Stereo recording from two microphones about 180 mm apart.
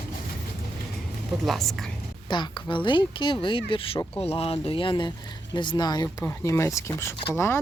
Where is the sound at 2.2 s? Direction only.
25° left (ahead or behind).